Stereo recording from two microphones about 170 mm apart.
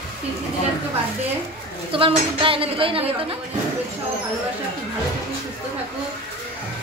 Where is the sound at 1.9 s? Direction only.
30° right (ahead or behind).